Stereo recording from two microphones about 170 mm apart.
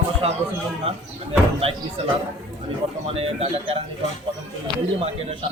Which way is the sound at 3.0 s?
35° right (ahead or behind).